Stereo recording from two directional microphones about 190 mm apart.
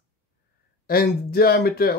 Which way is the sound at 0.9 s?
55° left (ahead or behind).